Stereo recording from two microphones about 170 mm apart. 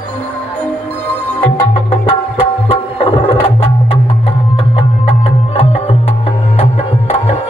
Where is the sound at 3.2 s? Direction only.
35° left (ahead or behind).